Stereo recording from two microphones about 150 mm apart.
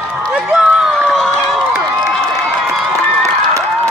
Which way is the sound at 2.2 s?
5° left (ahead or behind).